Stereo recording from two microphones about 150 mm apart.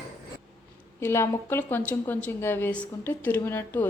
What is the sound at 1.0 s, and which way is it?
A woman's voice, 15° left (ahead or behind).